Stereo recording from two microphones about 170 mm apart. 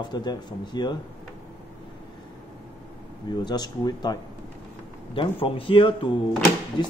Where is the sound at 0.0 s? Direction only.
25° left (ahead or behind).